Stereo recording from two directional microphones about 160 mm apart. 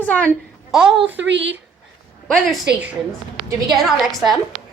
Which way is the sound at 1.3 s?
90° right.